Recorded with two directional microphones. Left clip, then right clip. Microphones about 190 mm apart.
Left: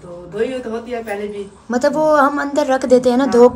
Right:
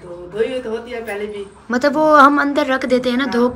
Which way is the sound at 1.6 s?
15° left (ahead or behind).